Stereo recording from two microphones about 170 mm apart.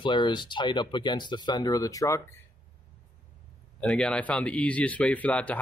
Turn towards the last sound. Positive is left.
turn(degrees=10)  # may be behind; listen again after turning